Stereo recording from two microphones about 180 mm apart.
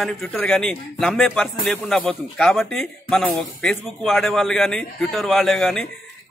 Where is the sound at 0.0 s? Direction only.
Centre (ahead or behind).